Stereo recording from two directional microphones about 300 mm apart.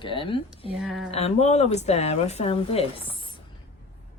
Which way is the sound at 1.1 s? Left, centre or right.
Left.